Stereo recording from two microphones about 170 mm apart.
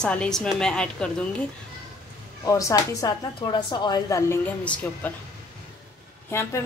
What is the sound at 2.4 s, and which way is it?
A woman's voice, 20° left (ahead or behind).